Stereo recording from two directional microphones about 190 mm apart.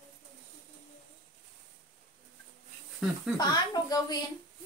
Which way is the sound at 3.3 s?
20° left (ahead or behind).